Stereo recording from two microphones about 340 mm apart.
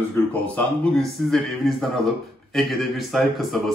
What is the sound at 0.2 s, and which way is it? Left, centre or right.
Speech, centre.